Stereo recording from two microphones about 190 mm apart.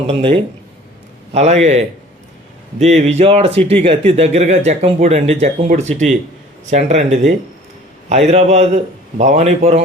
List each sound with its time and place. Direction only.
0.1 s speech: 30° right (ahead or behind)